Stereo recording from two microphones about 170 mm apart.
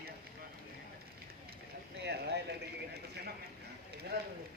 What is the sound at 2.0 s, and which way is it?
Clip-clop, 75° right (ahead or behind).